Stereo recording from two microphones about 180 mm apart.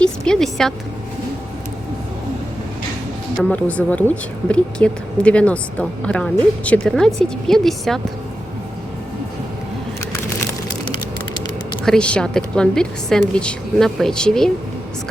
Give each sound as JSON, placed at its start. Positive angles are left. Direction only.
{"t": 0.0, "sound": "a sound", "side_deg": 5}
{"t": 3.3, "sound": "a woman's voice", "side_deg": 5}
{"t": 10.1, "sound": "vehicle", "side_deg": 15}
{"t": 11.9, "sound": "a woman's voice", "side_deg": 5}